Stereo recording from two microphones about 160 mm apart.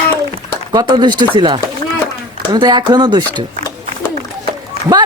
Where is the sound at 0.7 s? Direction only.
25° right (ahead or behind).